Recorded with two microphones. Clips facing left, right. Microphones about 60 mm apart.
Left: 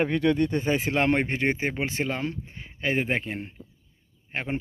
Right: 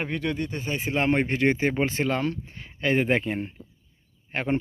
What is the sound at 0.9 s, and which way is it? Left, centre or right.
Speech, left.